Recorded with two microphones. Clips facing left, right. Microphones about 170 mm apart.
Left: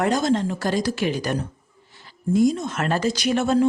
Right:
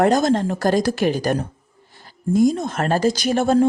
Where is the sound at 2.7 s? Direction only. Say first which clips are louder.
Right 4 dB; 35° right (ahead or behind).